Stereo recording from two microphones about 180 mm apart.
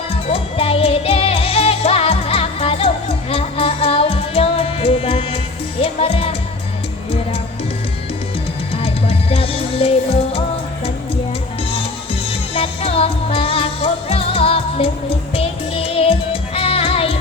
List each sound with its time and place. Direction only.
0.3 s music: 30° left (ahead or behind)
8.7 s music: 30° left (ahead or behind)
12.3 s music: 30° left (ahead or behind)